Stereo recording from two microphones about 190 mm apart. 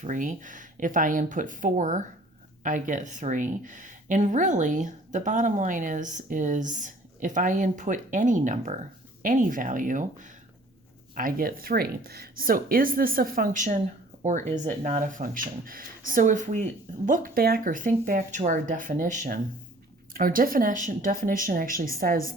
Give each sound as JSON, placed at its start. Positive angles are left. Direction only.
{"t": 0.0, "sound": "a woman's voice", "side_deg": -45}